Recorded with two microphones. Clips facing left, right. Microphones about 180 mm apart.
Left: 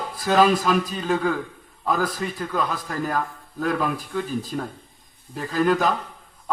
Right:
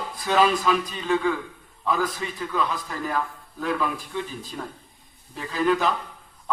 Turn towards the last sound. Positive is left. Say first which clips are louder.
# left 2 dB
turn(degrees=45)  # may be behind; listen again after turning